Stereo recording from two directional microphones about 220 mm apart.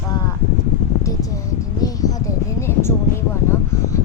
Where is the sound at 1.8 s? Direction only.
15° left (ahead or behind).